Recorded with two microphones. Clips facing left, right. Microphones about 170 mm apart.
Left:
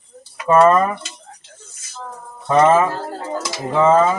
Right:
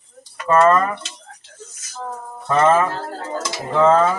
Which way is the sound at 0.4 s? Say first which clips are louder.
Left 2 dB; 10° left (ahead or behind).